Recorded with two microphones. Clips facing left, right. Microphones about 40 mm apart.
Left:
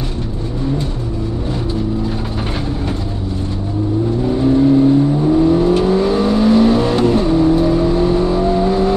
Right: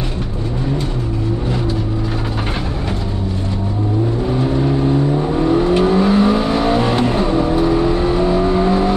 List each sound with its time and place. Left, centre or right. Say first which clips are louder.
5.4 s vehicle: right 1 dB; right